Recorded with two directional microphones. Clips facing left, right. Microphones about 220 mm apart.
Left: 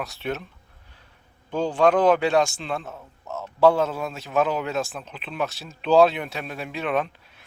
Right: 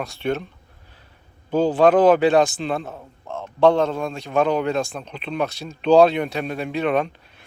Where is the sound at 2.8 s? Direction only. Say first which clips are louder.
Right 3 dB; 35° right (ahead or behind).